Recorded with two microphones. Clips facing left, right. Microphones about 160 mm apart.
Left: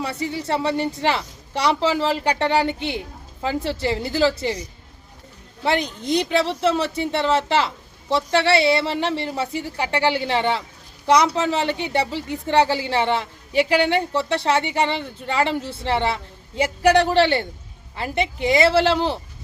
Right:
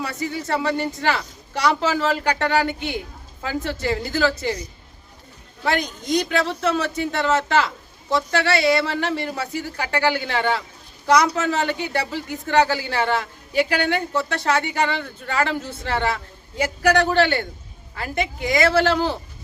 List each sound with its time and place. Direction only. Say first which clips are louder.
0.1 s speech: left 1 dB; 30° left (ahead or behind)
5.6 s a man's voice: left 1 dB; 25° left (ahead or behind)